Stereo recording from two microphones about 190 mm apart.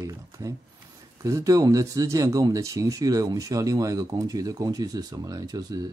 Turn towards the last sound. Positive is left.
turn(degrees=-20)  # may be behind; listen again after turning